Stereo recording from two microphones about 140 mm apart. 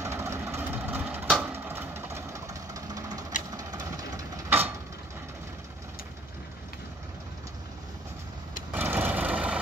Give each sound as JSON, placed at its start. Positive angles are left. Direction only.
{"t": 0.0, "sound": "vehicle", "side_deg": -20}
{"t": 4.5, "sound": "vehicle", "side_deg": -15}
{"t": 8.7, "sound": "vehicle", "side_deg": -15}